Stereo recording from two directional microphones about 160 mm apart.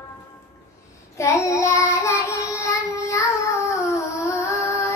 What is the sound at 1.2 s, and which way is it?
Child singing, 20° left (ahead or behind).